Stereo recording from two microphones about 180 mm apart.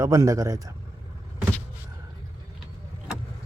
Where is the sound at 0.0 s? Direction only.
20° right (ahead or behind).